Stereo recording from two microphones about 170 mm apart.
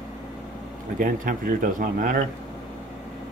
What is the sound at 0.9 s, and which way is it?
Speech, 50° right (ahead or behind).